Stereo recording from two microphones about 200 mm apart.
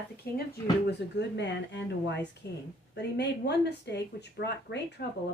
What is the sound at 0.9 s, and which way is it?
Speech, 60° left (ahead or behind).